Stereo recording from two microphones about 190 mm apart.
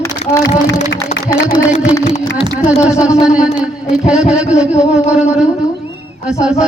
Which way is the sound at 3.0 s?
5° right (ahead or behind).